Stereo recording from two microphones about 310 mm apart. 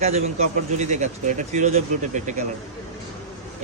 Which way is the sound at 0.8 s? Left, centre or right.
Right.